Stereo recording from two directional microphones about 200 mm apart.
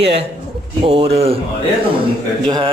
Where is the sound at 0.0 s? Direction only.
30° right (ahead or behind).